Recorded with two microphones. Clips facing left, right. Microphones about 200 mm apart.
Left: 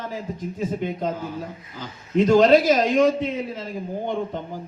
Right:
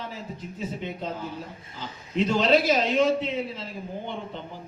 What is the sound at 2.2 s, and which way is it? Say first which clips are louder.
A man's voice: left 6 dB; 45° left (ahead or behind).